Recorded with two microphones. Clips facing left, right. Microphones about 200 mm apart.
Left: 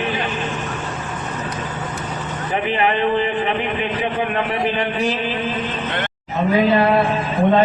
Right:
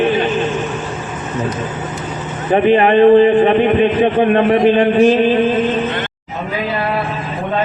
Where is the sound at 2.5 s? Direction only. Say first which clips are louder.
Right 10 dB; 40° right (ahead or behind).